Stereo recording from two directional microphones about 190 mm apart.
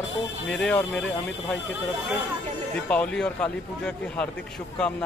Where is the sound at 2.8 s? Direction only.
5° left (ahead or behind).